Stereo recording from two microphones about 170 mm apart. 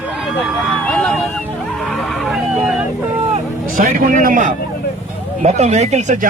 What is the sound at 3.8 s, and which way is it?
Speech, 55° right (ahead or behind).